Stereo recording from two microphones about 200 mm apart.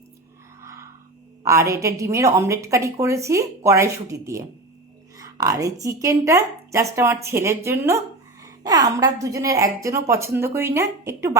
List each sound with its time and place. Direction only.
0.6 s music: 15° right (ahead or behind)
1.5 s a woman's voice: 15° right (ahead or behind)